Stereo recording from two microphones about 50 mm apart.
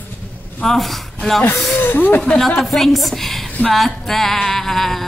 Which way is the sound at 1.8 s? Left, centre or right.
Left.